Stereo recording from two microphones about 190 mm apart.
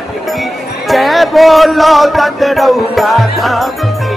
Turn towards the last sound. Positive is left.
turn(degrees=0)  # may be behind; listen again after turning